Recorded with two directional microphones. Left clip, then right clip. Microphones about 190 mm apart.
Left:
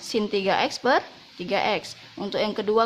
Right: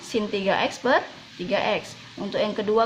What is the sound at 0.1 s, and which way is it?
Speech, 35° left (ahead or behind).